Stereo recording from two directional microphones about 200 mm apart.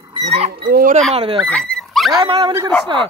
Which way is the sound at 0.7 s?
45° right (ahead or behind).